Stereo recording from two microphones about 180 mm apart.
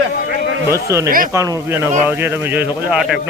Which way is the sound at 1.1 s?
50° right (ahead or behind).